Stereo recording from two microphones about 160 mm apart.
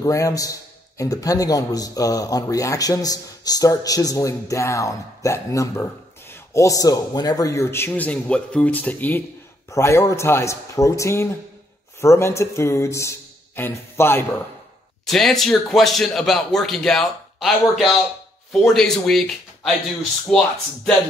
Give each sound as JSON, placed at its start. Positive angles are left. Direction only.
{"t": 0.0, "sound": "a man's voice", "side_deg": 20}
{"t": 15.0, "sound": "speech", "side_deg": 0}